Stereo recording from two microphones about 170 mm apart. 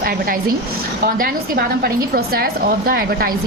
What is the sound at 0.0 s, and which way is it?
A woman's voice, 55° right (ahead or behind).